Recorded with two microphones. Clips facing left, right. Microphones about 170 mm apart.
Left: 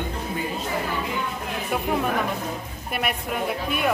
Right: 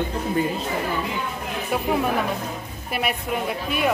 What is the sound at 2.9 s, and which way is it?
Speech, centre (ahead or behind).